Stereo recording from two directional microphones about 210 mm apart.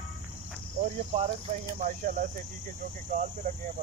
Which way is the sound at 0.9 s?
30° right (ahead or behind).